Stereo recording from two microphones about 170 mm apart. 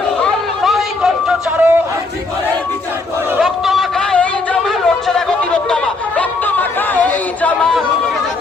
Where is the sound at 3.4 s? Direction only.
Centre (ahead or behind).